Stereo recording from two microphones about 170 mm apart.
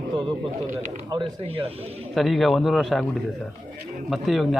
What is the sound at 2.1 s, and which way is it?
Speech, centre (ahead or behind).